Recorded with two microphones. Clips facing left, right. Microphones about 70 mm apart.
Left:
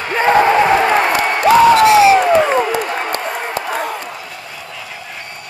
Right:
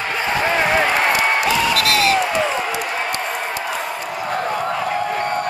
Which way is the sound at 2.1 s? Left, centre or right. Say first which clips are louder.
Left 7 dB; left.